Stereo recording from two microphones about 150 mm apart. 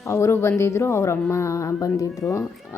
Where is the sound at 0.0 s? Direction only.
20° left (ahead or behind).